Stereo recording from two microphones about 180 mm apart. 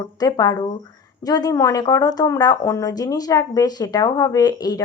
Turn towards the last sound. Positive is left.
turn(degrees=20)  # may be behind; listen again after turning